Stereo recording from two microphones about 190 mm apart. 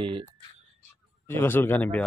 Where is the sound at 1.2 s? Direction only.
10° left (ahead or behind).